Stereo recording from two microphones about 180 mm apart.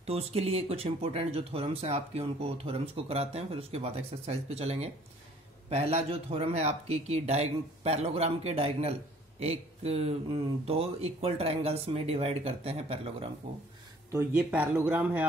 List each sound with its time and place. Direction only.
0.0 s speech: 35° right (ahead or behind)
14.1 s speech: 10° right (ahead or behind)